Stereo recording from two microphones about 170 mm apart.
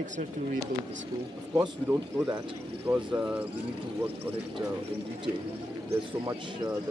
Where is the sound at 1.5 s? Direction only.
15° right (ahead or behind).